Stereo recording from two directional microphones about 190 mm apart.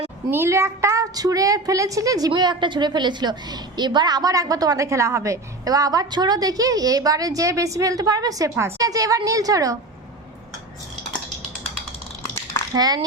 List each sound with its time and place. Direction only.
0.3 s speech: 10° right (ahead or behind)
12.7 s speech: 20° right (ahead or behind)